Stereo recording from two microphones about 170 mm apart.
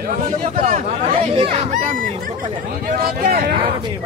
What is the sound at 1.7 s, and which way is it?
Speech, 50° right (ahead or behind).